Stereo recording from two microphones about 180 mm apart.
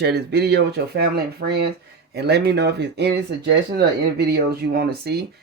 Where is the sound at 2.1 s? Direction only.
65° right (ahead or behind).